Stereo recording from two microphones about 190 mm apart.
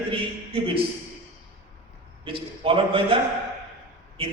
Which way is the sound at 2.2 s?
30° right (ahead or behind).